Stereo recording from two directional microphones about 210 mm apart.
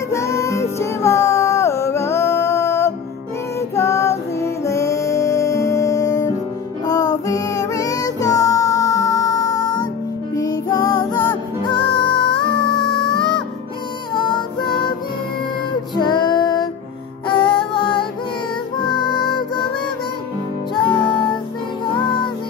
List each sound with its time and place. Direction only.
0.1 s music: 15° left (ahead or behind)
16.0 s female singing: 20° left (ahead or behind)
17.3 s music: 25° left (ahead or behind)
20.7 s music: 25° left (ahead or behind)